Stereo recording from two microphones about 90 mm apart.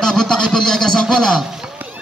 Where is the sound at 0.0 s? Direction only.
5° left (ahead or behind).